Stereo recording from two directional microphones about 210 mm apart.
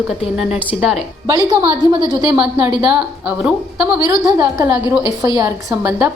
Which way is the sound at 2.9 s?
5° right (ahead or behind).